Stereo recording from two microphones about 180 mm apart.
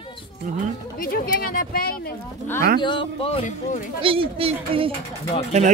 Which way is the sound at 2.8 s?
30° left (ahead or behind).